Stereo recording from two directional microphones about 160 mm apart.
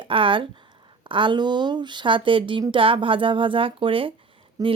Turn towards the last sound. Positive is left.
turn(degrees=-20)  # may be behind; listen again after turning